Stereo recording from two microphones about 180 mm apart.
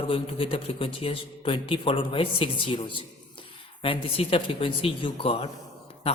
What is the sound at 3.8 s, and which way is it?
Speech, 30° left (ahead or behind).